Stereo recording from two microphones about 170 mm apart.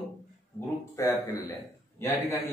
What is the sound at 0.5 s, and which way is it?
Speech, 15° left (ahead or behind).